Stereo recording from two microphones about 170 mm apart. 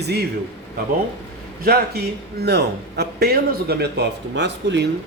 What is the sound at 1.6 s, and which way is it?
A man's voice, 70° right (ahead or behind).